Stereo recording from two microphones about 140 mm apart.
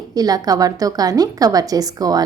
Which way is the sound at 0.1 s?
25° right (ahead or behind).